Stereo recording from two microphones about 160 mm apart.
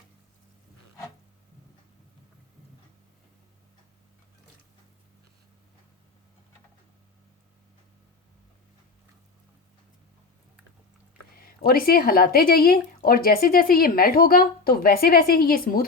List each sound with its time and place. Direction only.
11.3 s speech: 70° left (ahead or behind)